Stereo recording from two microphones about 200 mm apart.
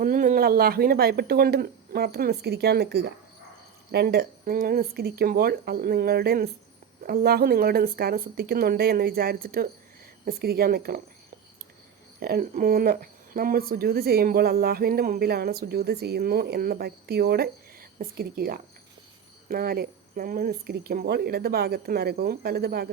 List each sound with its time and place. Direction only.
0.0 s speech: 40° right (ahead or behind)
12.2 s speech: 45° right (ahead or behind)